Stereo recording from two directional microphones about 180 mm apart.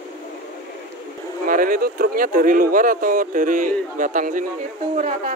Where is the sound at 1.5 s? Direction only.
50° right (ahead or behind).